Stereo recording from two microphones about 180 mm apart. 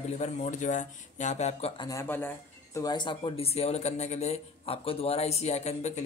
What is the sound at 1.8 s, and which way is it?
Speech, 15° left (ahead or behind).